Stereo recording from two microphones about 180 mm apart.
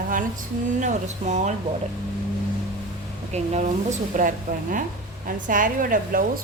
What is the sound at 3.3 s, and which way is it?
A woman's voice, 40° right (ahead or behind).